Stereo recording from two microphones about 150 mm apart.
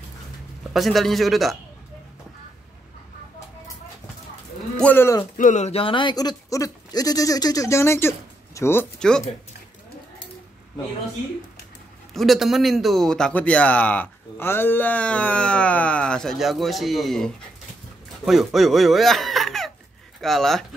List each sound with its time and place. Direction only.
0.7 s a man's voice: centre (ahead or behind)
4.8 s a man's voice: 15° left (ahead or behind)
5.4 s speech: 50° left (ahead or behind); by 8.8 s 15° left (ahead or behind)
12.1 s a man's voice: centre (ahead or behind)